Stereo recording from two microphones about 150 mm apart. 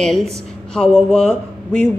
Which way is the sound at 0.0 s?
Centre (ahead or behind).